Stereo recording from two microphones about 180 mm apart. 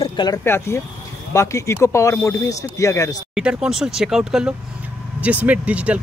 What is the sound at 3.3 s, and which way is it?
Speech, 5° right (ahead or behind).